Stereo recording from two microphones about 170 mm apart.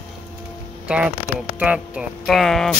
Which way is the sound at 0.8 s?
5° right (ahead or behind).